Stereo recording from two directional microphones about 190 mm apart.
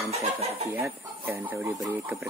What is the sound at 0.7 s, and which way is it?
Speech, 10° right (ahead or behind).